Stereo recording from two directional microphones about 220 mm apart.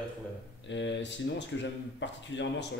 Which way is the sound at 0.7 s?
55° left (ahead or behind).